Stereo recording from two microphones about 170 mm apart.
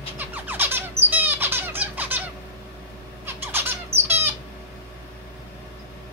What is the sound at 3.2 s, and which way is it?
Squawk, 10° right (ahead or behind).